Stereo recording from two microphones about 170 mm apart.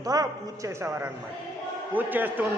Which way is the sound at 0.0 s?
20° right (ahead or behind).